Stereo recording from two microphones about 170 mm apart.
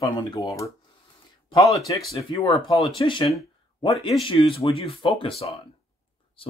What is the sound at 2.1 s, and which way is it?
Speech, 25° left (ahead or behind).